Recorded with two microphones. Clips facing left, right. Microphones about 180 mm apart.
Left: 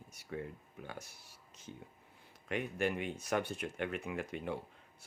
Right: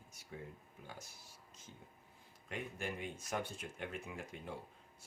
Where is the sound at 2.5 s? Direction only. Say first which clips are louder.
Left 8 dB; 70° left (ahead or behind).